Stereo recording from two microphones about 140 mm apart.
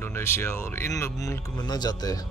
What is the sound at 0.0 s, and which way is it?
Speech, 15° left (ahead or behind).